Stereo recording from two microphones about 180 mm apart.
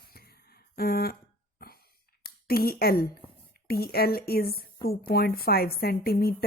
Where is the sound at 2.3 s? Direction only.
60° left (ahead or behind).